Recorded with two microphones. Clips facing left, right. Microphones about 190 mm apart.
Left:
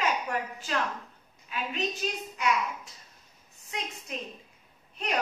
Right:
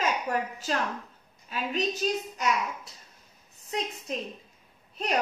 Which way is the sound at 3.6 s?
35° right (ahead or behind).